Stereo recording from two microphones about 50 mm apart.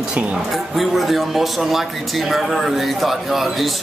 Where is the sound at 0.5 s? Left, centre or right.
Centre.